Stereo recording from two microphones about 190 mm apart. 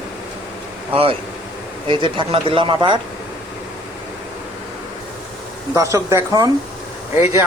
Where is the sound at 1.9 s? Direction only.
25° right (ahead or behind).